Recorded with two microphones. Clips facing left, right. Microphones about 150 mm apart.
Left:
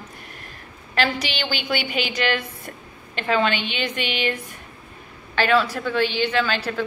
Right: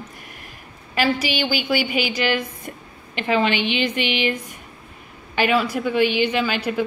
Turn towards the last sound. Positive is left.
turn(degrees=-10)  # may be behind; listen again after turning